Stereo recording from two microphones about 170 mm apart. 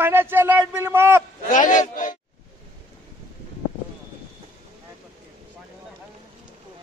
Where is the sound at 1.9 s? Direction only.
50° left (ahead or behind).